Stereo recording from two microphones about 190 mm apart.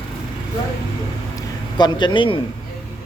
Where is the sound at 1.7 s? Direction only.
25° left (ahead or behind).